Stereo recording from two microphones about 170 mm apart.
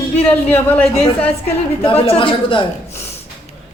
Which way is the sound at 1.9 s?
30° left (ahead or behind).